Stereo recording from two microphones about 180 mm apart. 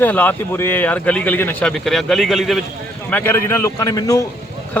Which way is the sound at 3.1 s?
10° left (ahead or behind).